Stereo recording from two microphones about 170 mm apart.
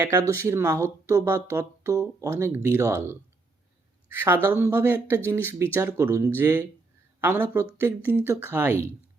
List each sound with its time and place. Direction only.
0.0 s speech: 15° right (ahead or behind)
4.6 s speech: 15° right (ahead or behind)